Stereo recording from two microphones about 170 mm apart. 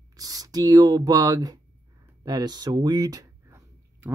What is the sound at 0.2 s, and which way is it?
Speech, 20° right (ahead or behind).